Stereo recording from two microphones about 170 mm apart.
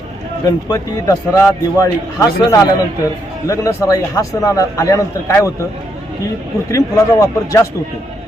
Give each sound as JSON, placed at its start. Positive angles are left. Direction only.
{"t": 0.4, "sound": "a man's voice", "side_deg": 20}
{"t": 6.7, "sound": "a man's voice", "side_deg": 15}